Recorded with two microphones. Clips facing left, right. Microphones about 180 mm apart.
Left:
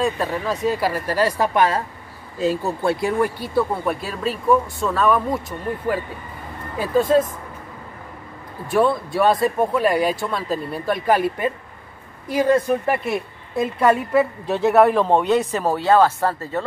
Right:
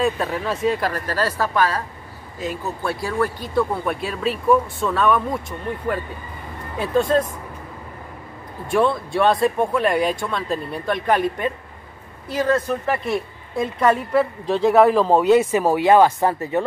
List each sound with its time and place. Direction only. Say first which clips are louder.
0.0 s a woman's voice: even; centre (ahead or behind); by 3.3 s 20° left (ahead or behind)
3.3 s a woman's voice: even; 5° left (ahead or behind)
8.6 s a woman's voice: left 1 dB; 5° left (ahead or behind); by 16.6 s 15° right (ahead or behind)